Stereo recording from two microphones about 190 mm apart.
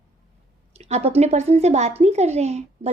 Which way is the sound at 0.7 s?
35° right (ahead or behind).